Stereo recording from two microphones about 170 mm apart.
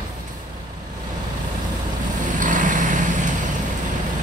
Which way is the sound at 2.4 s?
50° right (ahead or behind).